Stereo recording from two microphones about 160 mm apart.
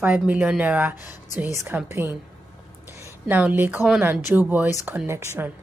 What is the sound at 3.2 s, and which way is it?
A woman's voice, 10° right (ahead or behind).